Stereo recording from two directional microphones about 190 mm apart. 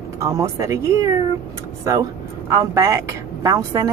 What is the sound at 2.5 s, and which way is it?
Speech, 15° right (ahead or behind).